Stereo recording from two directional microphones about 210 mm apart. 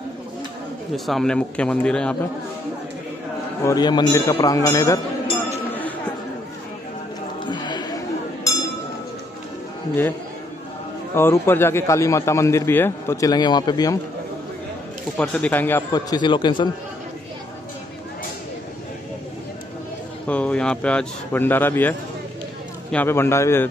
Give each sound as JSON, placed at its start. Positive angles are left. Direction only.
{"t": 0.9, "sound": "speech", "side_deg": 0}
{"t": 3.6, "sound": "a man's voice", "side_deg": 20}
{"t": 7.4, "sound": "a sound", "side_deg": 20}
{"t": 11.1, "sound": "a man's voice", "side_deg": 10}
{"t": 15.1, "sound": "a man's voice", "side_deg": 5}
{"t": 20.2, "sound": "a man's voice", "side_deg": 5}